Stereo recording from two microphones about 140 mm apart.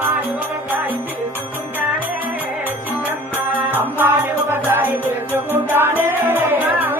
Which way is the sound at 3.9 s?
15° right (ahead or behind).